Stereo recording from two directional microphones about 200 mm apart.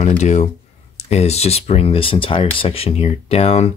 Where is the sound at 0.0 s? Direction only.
35° left (ahead or behind).